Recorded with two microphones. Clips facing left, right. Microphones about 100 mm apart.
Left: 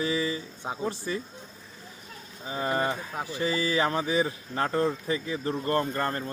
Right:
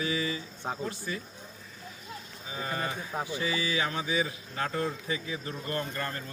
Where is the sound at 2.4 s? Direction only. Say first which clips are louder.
Left 6 dB; 35° left (ahead or behind).